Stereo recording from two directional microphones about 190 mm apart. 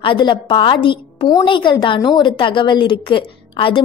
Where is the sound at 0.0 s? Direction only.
25° left (ahead or behind).